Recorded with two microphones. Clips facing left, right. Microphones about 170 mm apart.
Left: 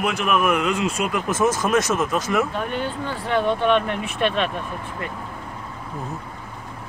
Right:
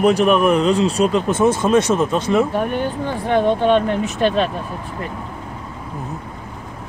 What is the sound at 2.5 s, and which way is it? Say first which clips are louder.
Speech: right 6 dB; 45° right (ahead or behind).